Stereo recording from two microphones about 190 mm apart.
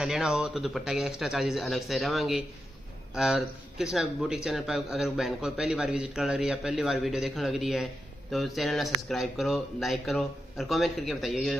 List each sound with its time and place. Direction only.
0.0 s speech: 5° right (ahead or behind)